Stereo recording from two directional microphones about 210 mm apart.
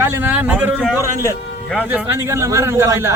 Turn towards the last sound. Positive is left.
turn(degrees=-10)  # may be behind; listen again after turning